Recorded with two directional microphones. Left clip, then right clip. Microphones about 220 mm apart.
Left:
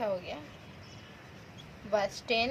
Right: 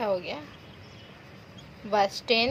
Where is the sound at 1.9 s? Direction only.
45° right (ahead or behind).